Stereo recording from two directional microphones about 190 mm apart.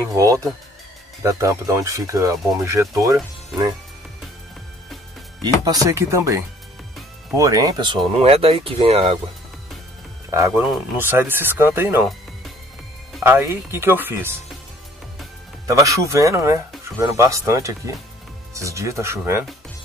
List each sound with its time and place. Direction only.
0.1 s speech: 15° right (ahead or behind)
5.7 s speech: 15° right (ahead or behind)
10.5 s speech: 5° right (ahead or behind)
13.2 s speech: 15° right (ahead or behind)
15.6 s speech: 15° right (ahead or behind)